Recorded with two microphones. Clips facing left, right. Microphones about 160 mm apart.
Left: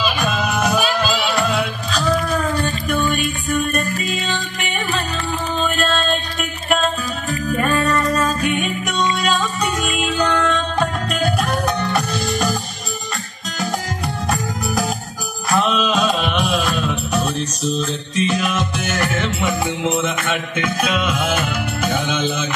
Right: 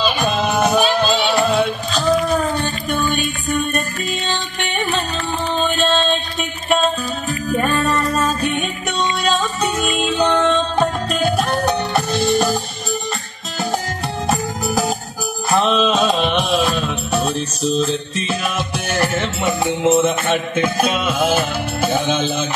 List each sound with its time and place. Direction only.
0.0 s music: centre (ahead or behind)
2.9 s music: centre (ahead or behind)
5.7 s music: centre (ahead or behind)
7.6 s music: centre (ahead or behind)
15.5 s music: centre (ahead or behind)
18.6 s music: 35° right (ahead or behind)
19.4 s music: centre (ahead or behind)
20.0 s music: 35° right (ahead or behind)